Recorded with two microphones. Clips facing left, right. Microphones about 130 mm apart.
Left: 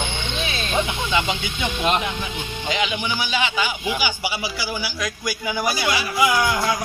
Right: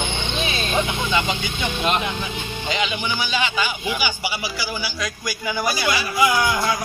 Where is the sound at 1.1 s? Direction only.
10° left (ahead or behind).